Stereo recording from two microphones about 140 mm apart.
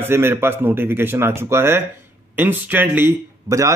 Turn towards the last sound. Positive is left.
turn(degrees=-20)  # may be behind; listen again after turning